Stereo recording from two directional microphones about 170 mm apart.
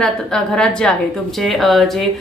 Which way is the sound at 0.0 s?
5° left (ahead or behind).